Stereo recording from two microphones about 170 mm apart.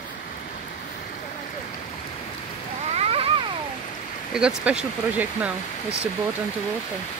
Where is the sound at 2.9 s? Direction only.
35° right (ahead or behind).